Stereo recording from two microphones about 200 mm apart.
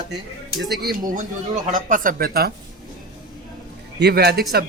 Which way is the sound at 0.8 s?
50° right (ahead or behind).